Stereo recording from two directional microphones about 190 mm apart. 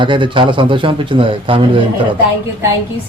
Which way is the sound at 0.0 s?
25° right (ahead or behind).